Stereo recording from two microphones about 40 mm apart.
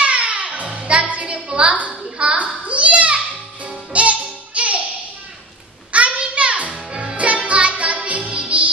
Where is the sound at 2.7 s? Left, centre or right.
Right.